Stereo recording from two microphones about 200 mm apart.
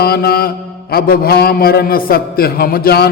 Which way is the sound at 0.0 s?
50° left (ahead or behind).